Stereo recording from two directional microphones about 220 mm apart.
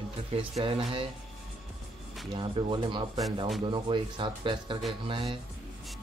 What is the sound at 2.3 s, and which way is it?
Speech, 20° right (ahead or behind).